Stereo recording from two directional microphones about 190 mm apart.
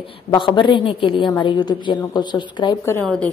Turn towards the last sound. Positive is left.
turn(degrees=5)  # may be behind; listen again after turning